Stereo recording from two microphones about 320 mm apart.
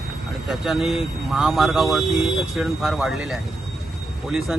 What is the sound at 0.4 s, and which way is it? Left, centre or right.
Speech, centre.